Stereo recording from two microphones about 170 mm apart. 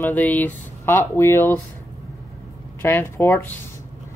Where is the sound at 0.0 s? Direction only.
10° left (ahead or behind).